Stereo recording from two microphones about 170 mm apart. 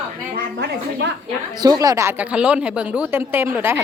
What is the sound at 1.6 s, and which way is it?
A woman's voice, 20° right (ahead or behind).